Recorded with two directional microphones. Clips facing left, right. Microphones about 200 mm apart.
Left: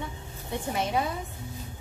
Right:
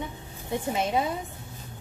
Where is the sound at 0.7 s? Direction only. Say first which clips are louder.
Right 1 dB; 20° right (ahead or behind).